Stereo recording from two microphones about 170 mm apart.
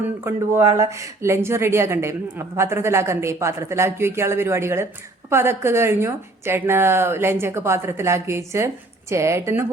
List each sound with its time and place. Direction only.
0.3 s a woman's voice: 15° right (ahead or behind)